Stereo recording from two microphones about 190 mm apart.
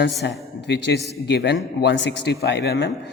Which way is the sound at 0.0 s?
65° left (ahead or behind).